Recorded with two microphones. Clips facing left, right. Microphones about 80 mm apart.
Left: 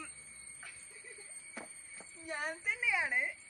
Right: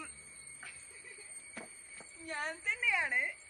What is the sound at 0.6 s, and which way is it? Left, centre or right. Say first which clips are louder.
Music: right 1 dB; centre.